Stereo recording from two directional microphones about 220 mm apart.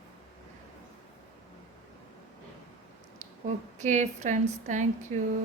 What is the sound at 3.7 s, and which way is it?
A woman's voice, 35° right (ahead or behind).